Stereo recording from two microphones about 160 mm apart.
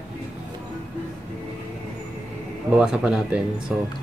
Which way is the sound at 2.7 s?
5° right (ahead or behind).